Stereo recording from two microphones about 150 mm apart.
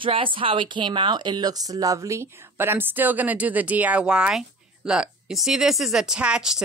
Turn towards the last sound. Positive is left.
turn(degrees=-5)  # may be behind; listen again after turning